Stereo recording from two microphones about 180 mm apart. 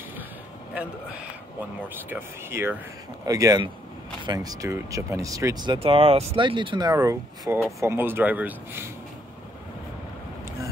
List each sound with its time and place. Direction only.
0.7 s speech: 10° right (ahead or behind)